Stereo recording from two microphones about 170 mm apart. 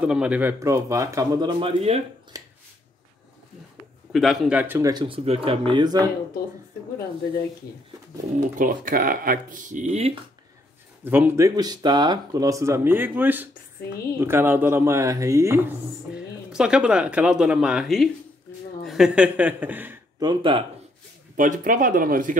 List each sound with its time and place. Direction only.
0.0 s a man's voice: 5° right (ahead or behind); by 2.0 s 35° right (ahead or behind)
2.3 s a sound: 20° right (ahead or behind)
4.1 s speech: centre (ahead or behind)
4.9 s speech: 30° right (ahead or behind)
8.4 s speech: 50° right (ahead or behind)
11.1 s speech: 10° right (ahead or behind)
20.2 s a man's voice: 25° right (ahead or behind)
21.4 s speech: 50° right (ahead or behind)